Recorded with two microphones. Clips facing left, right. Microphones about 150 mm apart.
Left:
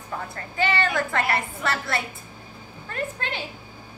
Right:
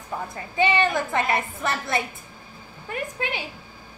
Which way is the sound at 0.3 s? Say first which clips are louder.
Right 3 dB; 20° right (ahead or behind).